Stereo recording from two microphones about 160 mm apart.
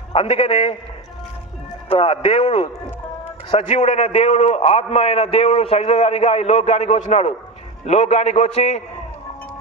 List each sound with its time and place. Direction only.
0.1 s a man's voice: 35° left (ahead or behind)
1.9 s a man's voice: 35° left (ahead or behind)